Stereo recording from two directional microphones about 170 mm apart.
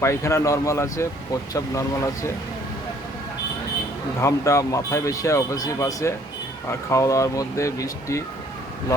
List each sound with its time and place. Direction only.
0.0 s speech: 15° left (ahead or behind)
4.2 s speech: 15° left (ahead or behind)